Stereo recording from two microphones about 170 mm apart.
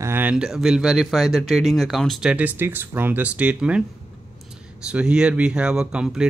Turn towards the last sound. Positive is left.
turn(degrees=-5)  # may be behind; listen again after turning